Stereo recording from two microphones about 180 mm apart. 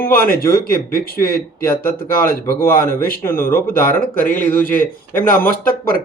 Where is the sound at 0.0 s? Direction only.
55° left (ahead or behind).